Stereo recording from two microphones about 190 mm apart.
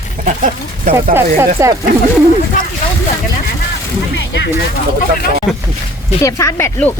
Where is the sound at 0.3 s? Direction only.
45° right (ahead or behind).